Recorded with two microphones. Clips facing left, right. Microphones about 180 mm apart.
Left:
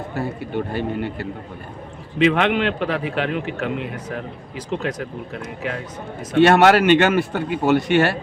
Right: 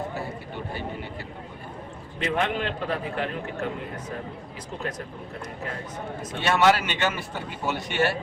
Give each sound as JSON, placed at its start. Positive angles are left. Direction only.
{"t": 0.2, "sound": "a man's voice", "side_deg": 70}